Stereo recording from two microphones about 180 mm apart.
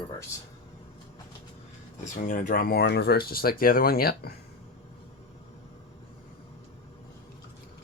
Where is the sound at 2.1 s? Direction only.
45° left (ahead or behind).